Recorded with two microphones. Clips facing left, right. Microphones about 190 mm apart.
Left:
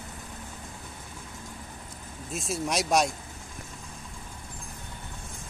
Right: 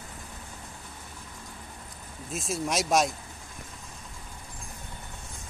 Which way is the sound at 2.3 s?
Centre (ahead or behind).